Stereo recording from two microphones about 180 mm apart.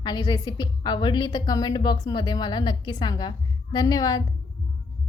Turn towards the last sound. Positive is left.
turn(degrees=20)  # may be behind; listen again after turning